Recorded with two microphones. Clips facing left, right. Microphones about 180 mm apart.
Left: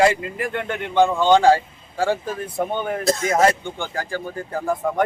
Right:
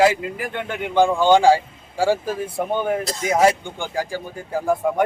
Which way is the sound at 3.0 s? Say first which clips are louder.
Left 6 dB; 50° left (ahead or behind).